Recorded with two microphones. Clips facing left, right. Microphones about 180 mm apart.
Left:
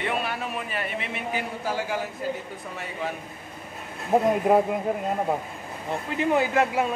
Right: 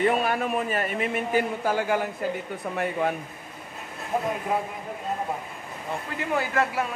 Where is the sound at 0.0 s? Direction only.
45° right (ahead or behind).